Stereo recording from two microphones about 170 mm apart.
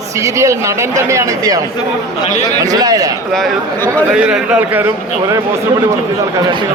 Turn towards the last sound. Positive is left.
turn(degrees=-10)  # may be behind; listen again after turning